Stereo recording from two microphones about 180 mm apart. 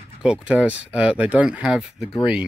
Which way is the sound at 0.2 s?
5° right (ahead or behind).